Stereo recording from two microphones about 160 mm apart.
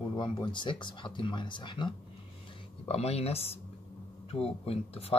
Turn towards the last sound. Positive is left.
turn(degrees=35)  # may be behind; listen again after turning